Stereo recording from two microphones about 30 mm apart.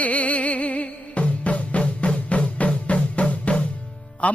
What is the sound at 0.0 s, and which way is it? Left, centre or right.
Music, left.